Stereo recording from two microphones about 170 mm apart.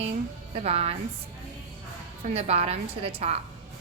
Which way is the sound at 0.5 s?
35° right (ahead or behind).